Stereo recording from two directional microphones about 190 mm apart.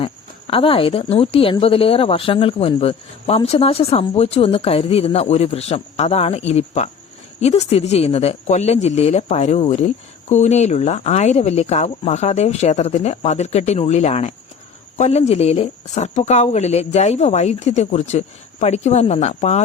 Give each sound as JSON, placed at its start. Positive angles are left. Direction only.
{"t": 0.0, "sound": "speech", "side_deg": 30}